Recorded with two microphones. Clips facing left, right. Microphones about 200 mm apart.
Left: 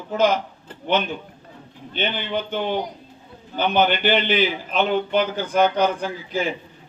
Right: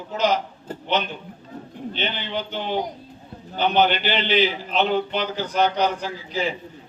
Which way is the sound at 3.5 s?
50° left (ahead or behind).